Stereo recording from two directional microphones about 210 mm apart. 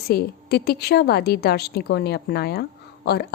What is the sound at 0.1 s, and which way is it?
A woman's voice, 45° left (ahead or behind).